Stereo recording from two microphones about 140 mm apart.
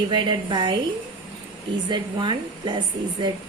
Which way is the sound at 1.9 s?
35° right (ahead or behind).